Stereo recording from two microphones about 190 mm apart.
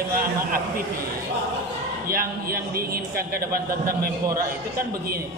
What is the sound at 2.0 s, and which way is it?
A man's voice, 50° right (ahead or behind).